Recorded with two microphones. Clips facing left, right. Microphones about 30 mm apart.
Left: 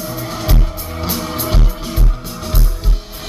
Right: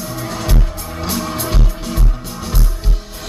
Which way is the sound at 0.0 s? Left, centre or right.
Centre.